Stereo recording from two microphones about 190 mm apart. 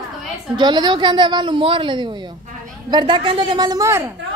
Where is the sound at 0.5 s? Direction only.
25° right (ahead or behind).